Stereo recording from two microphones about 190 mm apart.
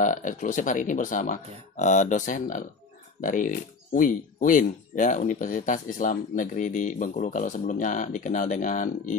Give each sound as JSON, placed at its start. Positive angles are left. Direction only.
{"t": 0.0, "sound": "speech", "side_deg": 45}